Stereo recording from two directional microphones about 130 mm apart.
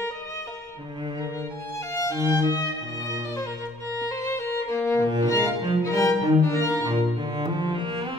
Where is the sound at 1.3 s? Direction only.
25° left (ahead or behind).